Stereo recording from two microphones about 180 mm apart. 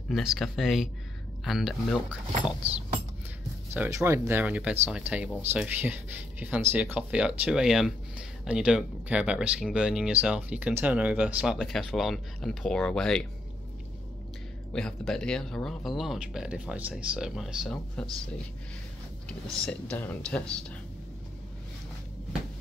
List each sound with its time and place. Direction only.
0.1 s speech: centre (ahead or behind)
3.7 s speech: 10° right (ahead or behind); by 13.3 s 5° left (ahead or behind)
14.7 s speech: 5° left (ahead or behind)
19.5 s speech: 5° left (ahead or behind)